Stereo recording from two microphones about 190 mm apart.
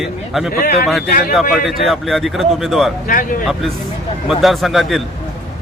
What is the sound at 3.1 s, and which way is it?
Speech, 45° left (ahead or behind).